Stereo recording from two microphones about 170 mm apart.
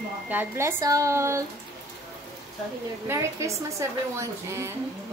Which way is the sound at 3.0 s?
15° right (ahead or behind).